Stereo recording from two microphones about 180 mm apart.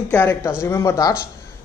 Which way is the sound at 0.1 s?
15° left (ahead or behind).